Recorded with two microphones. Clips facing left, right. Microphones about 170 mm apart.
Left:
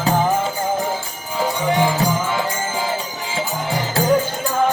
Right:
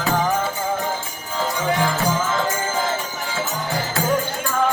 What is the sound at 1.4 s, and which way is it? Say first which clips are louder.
Music: left 3 dB; 15° left (ahead or behind).